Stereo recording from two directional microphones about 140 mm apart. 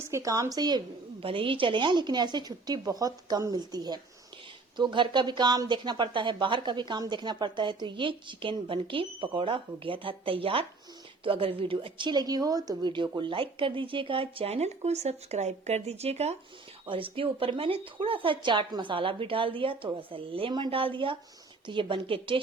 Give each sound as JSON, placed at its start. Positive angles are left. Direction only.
{"t": 0.1, "sound": "speech", "side_deg": -25}
{"t": 1.2, "sound": "speech", "side_deg": -40}